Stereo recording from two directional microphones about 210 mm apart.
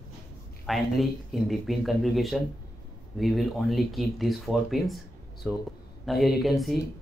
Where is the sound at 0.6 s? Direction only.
Centre (ahead or behind).